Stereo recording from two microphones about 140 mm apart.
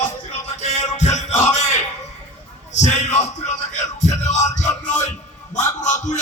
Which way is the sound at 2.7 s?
60° left (ahead or behind).